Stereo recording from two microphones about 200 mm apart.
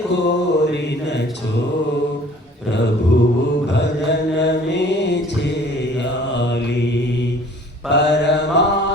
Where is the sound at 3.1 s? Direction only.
60° left (ahead or behind).